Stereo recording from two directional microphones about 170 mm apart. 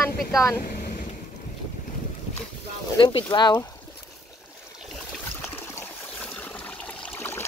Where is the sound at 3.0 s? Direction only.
30° left (ahead or behind).